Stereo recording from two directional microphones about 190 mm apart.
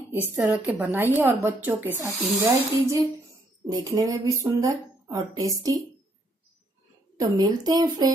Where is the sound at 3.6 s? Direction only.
20° right (ahead or behind).